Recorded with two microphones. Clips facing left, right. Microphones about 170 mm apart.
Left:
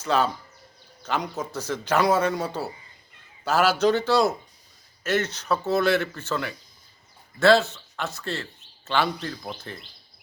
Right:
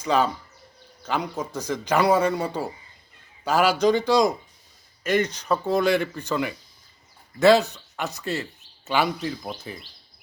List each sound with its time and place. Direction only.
0.0 s speech: 10° right (ahead or behind)
7.3 s speech: 15° right (ahead or behind)